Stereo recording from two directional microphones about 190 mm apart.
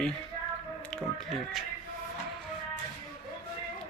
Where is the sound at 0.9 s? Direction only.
Centre (ahead or behind).